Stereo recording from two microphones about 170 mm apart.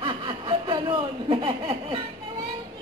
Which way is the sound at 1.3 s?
30° right (ahead or behind).